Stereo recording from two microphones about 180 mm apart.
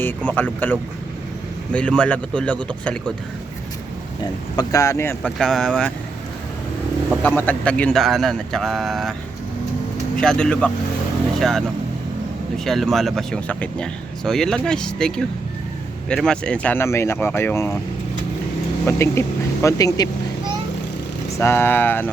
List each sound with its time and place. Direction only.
0.3 s speech: 10° left (ahead or behind)
4.2 s speech: 20° left (ahead or behind)
5.4 s speech: centre (ahead or behind)
7.2 s speech: 10° left (ahead or behind)
10.2 s speech: 5° left (ahead or behind)
18.9 s speech: 15° left (ahead or behind)
21.3 s speech: 15° left (ahead or behind)